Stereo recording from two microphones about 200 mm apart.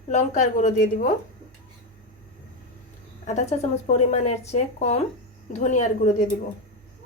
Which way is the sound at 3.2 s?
35° left (ahead or behind).